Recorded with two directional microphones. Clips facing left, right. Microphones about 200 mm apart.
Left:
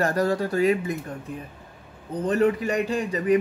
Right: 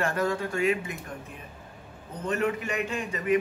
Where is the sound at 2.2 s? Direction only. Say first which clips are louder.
Left 6 dB; 35° left (ahead or behind).